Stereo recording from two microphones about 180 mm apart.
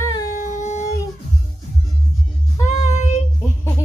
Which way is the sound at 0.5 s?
40° left (ahead or behind).